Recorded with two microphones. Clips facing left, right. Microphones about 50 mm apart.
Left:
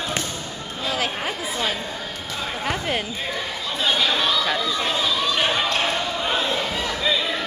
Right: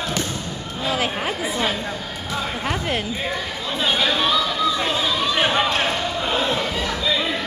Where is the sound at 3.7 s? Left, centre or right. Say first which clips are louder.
Right 1 dB; centre.